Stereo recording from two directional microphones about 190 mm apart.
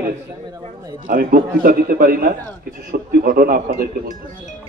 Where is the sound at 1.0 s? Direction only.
45° right (ahead or behind).